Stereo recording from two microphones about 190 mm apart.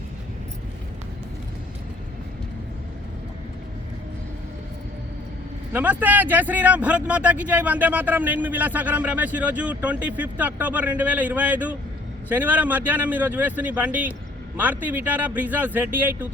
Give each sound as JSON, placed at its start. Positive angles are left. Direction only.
{"t": 5.7, "sound": "speech", "side_deg": -10}